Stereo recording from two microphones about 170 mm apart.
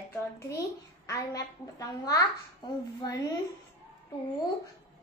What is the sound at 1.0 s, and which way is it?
A woman's voice, 20° left (ahead or behind).